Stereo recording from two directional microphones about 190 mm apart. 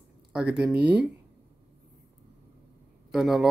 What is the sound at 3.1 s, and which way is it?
Speech, centre (ahead or behind).